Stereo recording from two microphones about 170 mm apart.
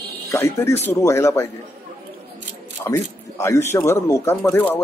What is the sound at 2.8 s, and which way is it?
A man's voice, 15° left (ahead or behind).